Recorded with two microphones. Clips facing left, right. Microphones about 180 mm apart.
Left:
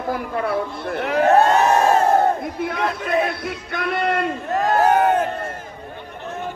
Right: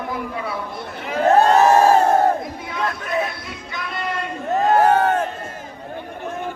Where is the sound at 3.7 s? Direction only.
60° left (ahead or behind).